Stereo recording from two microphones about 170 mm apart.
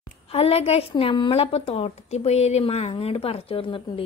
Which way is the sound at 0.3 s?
35° left (ahead or behind).